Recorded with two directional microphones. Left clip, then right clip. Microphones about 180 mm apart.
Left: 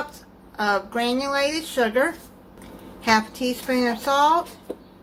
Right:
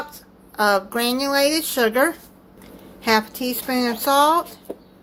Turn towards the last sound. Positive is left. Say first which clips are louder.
# right 2 dB
turn(degrees=-50)  # may be behind; listen again after turning